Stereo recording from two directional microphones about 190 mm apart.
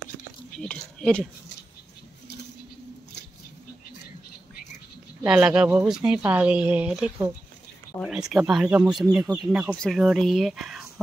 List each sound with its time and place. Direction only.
0.6 s speech: 5° left (ahead or behind)
5.2 s speech: 5° right (ahead or behind)
7.9 s speech: 20° left (ahead or behind)
8.3 s speech: centre (ahead or behind)